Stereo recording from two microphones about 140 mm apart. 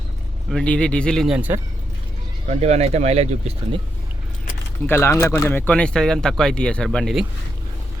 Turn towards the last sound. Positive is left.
turn(degrees=5)  # may be behind; listen again after turning